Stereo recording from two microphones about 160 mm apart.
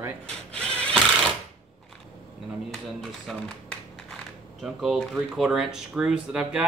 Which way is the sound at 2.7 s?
5° left (ahead or behind).